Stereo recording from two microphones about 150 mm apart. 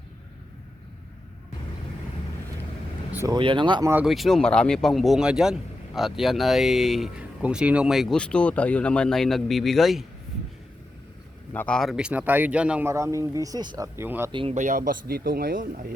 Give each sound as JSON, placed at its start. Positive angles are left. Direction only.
{"t": 3.1, "sound": "vehicle", "side_deg": -15}
{"t": 3.3, "sound": "speech", "side_deg": -30}
{"t": 4.0, "sound": "speech", "side_deg": 0}
{"t": 11.5, "sound": "speech", "side_deg": 10}
{"t": 12.9, "sound": "speech", "side_deg": -20}
{"t": 14.5, "sound": "speech", "side_deg": -60}